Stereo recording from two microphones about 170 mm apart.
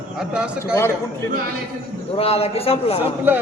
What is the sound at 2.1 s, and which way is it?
A man's voice, 35° left (ahead or behind).